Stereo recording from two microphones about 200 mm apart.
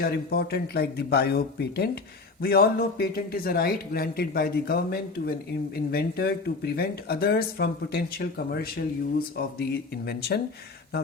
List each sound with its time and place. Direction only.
0.0 s speech: 50° left (ahead or behind)